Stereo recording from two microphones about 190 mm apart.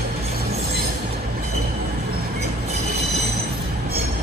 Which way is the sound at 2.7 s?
35° right (ahead or behind).